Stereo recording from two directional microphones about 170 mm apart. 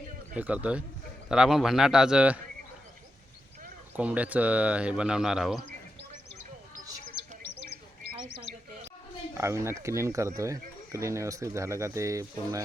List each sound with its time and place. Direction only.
0.3 s a man's voice: 10° right (ahead or behind)
3.9 s speech: 10° right (ahead or behind)
7.4 s bird: 85° left
9.4 s speech: 15° right (ahead or behind)